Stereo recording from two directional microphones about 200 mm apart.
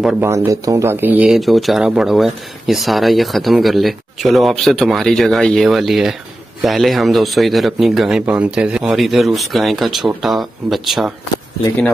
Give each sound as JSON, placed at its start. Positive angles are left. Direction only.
{"t": 0.0, "sound": "speech", "side_deg": -5}
{"t": 0.3, "sound": "speech", "side_deg": -15}